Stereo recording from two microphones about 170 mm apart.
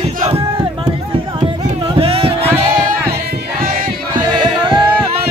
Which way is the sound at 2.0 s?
35° right (ahead or behind).